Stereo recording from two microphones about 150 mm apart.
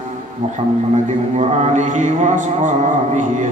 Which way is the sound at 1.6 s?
50° right (ahead or behind).